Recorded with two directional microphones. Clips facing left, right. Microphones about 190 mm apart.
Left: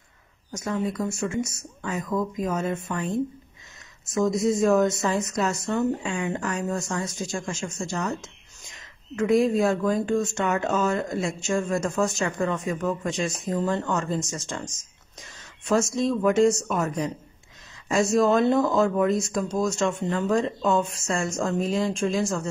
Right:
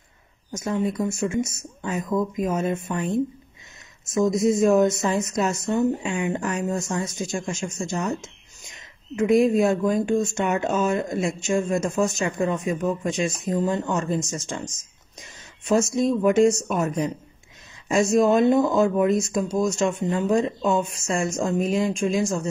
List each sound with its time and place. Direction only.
0.5 s speech: 20° right (ahead or behind)
16.0 s speech: 20° right (ahead or behind)